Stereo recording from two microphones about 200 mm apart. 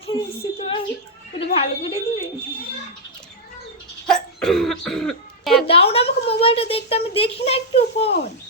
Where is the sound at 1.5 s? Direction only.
30° left (ahead or behind).